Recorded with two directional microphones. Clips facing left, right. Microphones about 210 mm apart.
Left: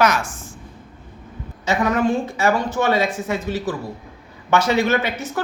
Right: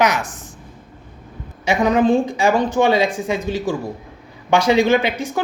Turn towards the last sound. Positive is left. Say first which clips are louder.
# right 4 dB
turn(degrees=-15)  # may be behind; listen again after turning